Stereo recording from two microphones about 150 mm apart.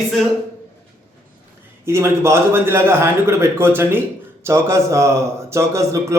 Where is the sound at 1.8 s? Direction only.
15° right (ahead or behind).